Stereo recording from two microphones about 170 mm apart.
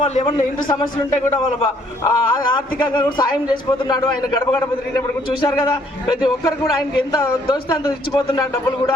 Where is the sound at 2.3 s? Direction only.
25° left (ahead or behind).